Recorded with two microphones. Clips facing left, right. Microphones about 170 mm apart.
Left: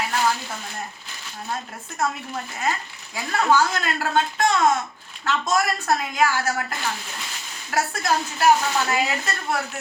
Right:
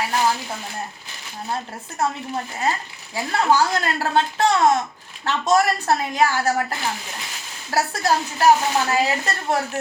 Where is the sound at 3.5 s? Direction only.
35° right (ahead or behind).